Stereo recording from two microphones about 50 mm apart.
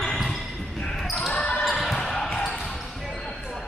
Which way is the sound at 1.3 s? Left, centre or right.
Left.